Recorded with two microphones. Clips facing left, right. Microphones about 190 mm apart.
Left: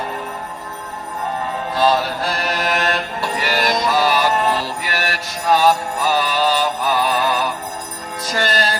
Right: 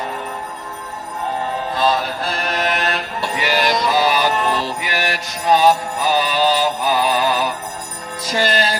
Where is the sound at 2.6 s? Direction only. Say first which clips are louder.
Left 1 dB; 40° left (ahead or behind).